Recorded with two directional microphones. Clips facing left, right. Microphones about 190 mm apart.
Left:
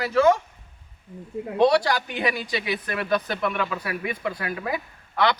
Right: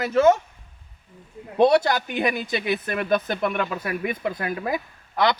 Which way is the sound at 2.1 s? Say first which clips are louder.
Right 2 dB; 50° right (ahead or behind).